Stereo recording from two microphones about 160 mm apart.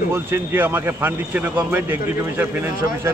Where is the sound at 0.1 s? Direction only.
15° right (ahead or behind).